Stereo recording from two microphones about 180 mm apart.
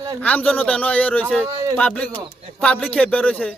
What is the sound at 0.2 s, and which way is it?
A man's voice, 10° left (ahead or behind).